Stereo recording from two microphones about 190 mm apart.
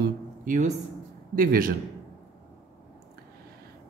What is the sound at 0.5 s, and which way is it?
A man's voice, 40° right (ahead or behind).